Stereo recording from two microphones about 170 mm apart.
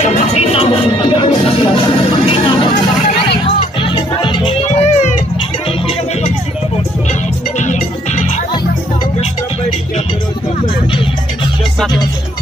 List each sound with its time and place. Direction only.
0.0 s music: 40° left (ahead or behind)
4.6 s music: 45° left (ahead or behind)
7.5 s music: 45° left (ahead or behind)